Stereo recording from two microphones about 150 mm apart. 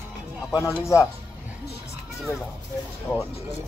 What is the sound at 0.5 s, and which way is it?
Speech, 25° left (ahead or behind).